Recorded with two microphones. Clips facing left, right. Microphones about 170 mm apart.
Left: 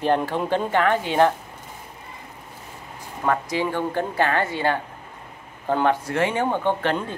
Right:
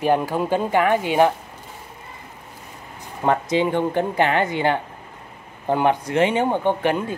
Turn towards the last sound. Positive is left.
turn(degrees=-10)  # may be behind; listen again after turning